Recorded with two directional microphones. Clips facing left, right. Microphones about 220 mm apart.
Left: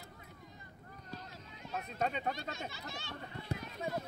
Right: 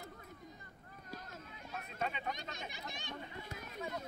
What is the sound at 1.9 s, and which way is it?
Speech, 40° left (ahead or behind).